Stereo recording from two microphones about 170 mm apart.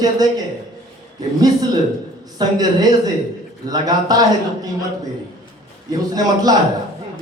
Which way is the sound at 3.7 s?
20° right (ahead or behind).